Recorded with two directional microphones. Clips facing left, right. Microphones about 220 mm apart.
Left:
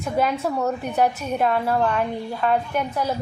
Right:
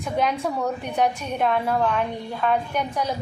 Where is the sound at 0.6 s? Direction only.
5° left (ahead or behind).